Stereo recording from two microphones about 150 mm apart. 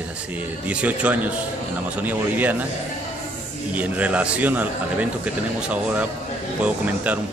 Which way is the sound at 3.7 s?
10° right (ahead or behind).